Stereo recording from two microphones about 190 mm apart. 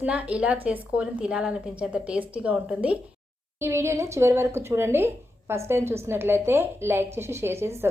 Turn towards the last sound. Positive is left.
turn(degrees=-15)  # may be behind; listen again after turning